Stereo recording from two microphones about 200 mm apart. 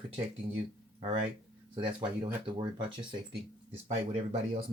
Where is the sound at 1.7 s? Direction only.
25° right (ahead or behind).